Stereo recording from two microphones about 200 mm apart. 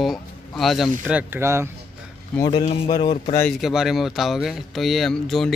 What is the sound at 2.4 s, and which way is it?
Speech, 20° left (ahead or behind).